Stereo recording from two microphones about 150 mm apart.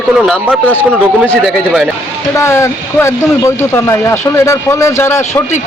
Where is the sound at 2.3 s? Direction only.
20° left (ahead or behind).